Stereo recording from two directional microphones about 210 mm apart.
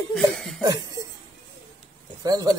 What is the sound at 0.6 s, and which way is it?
Cough, 20° right (ahead or behind).